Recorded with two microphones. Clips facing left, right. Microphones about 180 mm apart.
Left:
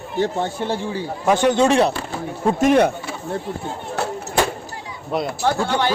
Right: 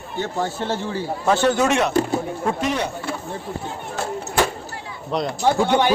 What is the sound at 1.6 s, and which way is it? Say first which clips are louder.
Speech: left 3 dB; 30° left (ahead or behind).